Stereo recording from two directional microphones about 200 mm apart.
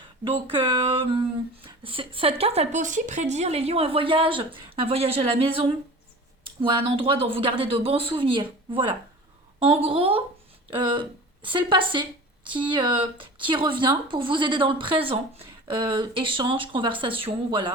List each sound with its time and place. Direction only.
0.3 s speech: 25° right (ahead or behind)